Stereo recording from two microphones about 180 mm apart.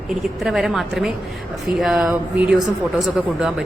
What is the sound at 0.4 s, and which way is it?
A woman's voice, centre (ahead or behind).